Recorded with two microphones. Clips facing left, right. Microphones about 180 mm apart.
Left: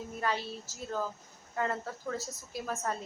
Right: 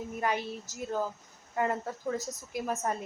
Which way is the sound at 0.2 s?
15° right (ahead or behind).